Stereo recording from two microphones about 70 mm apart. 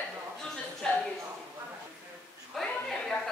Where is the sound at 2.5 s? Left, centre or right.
Centre.